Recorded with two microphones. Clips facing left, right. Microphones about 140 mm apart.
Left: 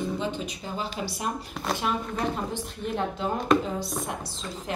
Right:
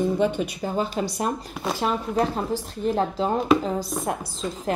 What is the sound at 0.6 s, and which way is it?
Speech, 50° right (ahead or behind).